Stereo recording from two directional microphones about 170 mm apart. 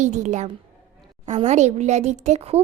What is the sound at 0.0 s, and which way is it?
A woman's voice, 45° right (ahead or behind).